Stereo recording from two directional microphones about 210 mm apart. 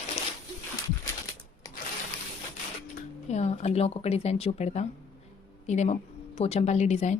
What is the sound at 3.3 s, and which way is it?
A woman's voice, 30° left (ahead or behind).